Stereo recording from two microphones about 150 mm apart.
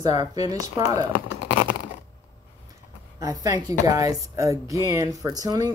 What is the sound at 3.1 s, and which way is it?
Speech, 25° right (ahead or behind).